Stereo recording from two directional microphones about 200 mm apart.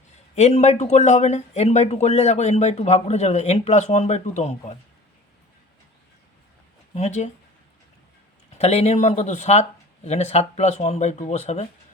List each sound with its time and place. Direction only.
0.3 s speech: 35° left (ahead or behind)
6.9 s speech: 35° left (ahead or behind)
8.5 s speech: 35° left (ahead or behind)